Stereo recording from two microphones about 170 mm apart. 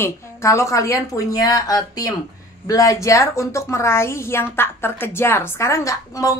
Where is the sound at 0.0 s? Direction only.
15° left (ahead or behind).